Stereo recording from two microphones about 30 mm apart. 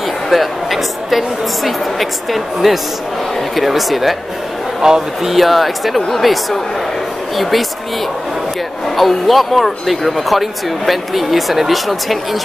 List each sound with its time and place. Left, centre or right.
0.3 s a woman's voice: centre
4.8 s speech: centre
5.2 s a woman's voice: centre
8.9 s a woman's voice: centre